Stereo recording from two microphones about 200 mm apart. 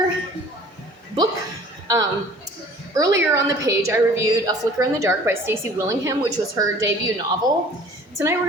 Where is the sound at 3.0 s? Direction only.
15° right (ahead or behind).